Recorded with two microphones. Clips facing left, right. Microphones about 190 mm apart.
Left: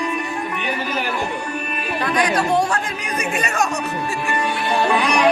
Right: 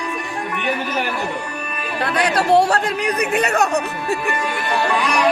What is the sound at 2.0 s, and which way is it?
Chatter, 65° right (ahead or behind).